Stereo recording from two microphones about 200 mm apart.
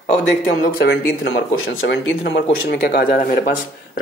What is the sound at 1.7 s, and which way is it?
Speech, 70° left (ahead or behind).